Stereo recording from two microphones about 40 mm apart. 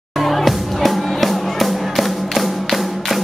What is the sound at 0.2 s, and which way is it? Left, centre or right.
Music, centre.